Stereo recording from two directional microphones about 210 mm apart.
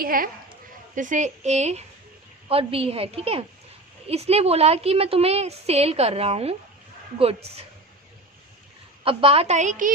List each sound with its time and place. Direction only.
0.0 s a woman's voice: 45° right (ahead or behind)
9.0 s a woman's voice: 25° right (ahead or behind)